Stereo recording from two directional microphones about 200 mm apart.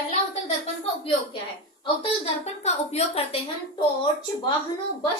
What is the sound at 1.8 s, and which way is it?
A woman's voice, 30° left (ahead or behind).